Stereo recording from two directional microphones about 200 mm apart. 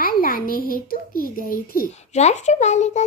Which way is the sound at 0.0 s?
45° left (ahead or behind).